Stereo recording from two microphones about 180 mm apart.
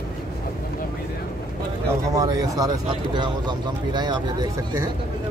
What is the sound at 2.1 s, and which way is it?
Speech, 20° right (ahead or behind).